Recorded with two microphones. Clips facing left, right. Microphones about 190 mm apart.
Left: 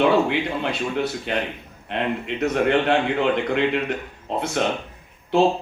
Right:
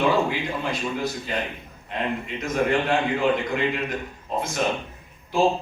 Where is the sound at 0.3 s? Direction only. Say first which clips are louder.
Left 3 dB; 70° left (ahead or behind).